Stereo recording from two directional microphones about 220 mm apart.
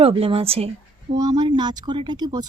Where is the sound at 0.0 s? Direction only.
25° right (ahead or behind).